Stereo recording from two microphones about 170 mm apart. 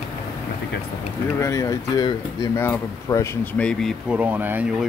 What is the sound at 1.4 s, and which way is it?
Speech, 20° left (ahead or behind).